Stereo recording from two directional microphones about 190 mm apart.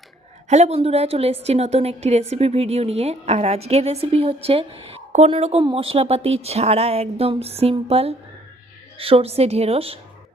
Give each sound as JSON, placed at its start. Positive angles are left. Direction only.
{"t": 0.4, "sound": "a woman's voice", "side_deg": -35}